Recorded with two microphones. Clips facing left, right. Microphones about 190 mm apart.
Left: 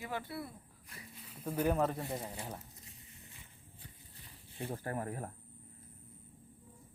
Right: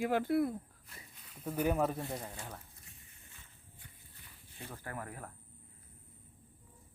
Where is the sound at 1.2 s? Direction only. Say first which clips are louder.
Even; 5° left (ahead or behind).